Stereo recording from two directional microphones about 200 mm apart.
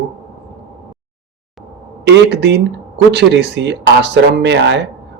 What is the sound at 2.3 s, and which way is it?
Speech, 60° right (ahead or behind).